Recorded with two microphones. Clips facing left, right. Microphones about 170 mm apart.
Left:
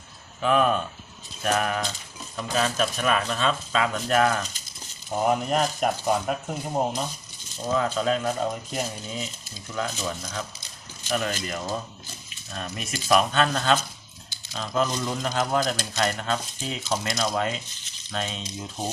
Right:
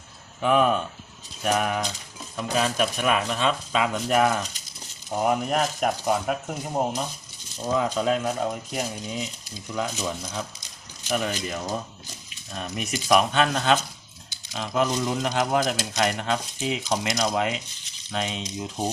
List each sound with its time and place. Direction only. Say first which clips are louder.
0.4 s speech: right 1 dB; 15° right (ahead or behind)
5.1 s speech: even; 5° right (ahead or behind)